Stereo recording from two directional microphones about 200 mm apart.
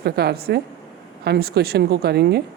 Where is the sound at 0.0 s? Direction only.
50° right (ahead or behind).